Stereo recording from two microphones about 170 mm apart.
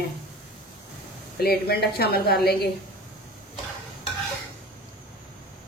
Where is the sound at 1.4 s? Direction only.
65° left (ahead or behind).